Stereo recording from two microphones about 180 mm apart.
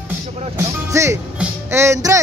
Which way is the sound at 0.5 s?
15° right (ahead or behind).